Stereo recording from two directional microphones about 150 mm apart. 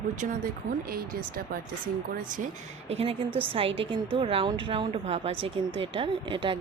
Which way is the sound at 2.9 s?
40° right (ahead or behind).